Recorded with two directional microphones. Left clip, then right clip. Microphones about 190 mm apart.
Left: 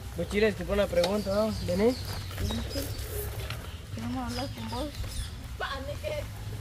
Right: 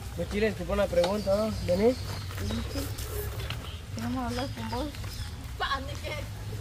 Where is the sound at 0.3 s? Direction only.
65° left (ahead or behind).